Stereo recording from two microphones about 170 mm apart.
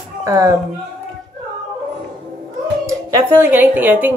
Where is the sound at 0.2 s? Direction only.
20° right (ahead or behind).